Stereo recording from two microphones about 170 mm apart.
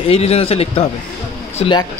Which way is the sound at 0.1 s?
35° left (ahead or behind).